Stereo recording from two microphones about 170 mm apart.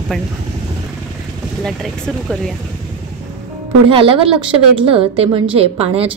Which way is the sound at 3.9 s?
30° right (ahead or behind).